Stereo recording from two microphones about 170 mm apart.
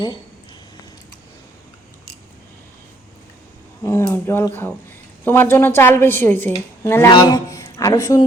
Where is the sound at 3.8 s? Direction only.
15° left (ahead or behind).